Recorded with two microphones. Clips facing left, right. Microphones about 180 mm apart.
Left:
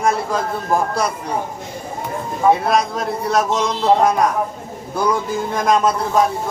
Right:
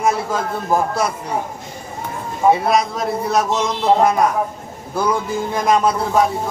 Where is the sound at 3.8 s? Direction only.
Centre (ahead or behind).